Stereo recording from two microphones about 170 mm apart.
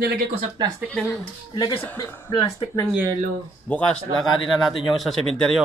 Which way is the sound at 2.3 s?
30° left (ahead or behind).